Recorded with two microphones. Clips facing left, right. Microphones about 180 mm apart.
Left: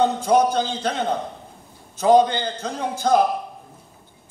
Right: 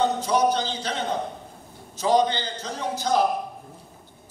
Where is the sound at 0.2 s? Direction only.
50° left (ahead or behind).